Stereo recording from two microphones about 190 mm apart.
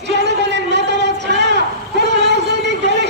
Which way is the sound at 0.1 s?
65° right (ahead or behind).